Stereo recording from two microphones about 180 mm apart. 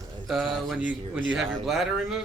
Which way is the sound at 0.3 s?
Centre (ahead or behind).